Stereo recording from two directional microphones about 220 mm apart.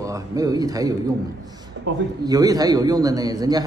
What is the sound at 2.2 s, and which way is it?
A man's voice, 15° right (ahead or behind).